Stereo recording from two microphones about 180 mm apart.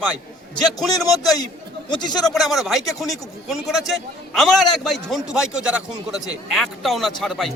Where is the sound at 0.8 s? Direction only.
Centre (ahead or behind).